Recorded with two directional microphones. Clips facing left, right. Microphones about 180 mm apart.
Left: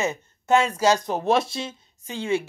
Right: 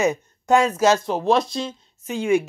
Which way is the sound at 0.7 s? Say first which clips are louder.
Right 3 dB; 10° left (ahead or behind).